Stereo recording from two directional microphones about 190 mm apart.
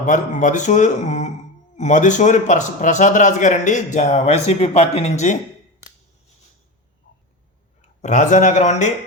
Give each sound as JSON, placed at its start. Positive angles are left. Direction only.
{"t": 0.0, "sound": "a man's voice", "side_deg": 40}
{"t": 7.8, "sound": "speech", "side_deg": 40}